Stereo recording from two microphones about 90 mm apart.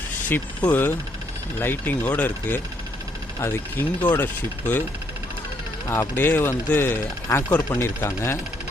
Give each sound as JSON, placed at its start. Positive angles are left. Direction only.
{"t": 0.3, "sound": "speech", "side_deg": 20}
{"t": 5.9, "sound": "speech", "side_deg": 25}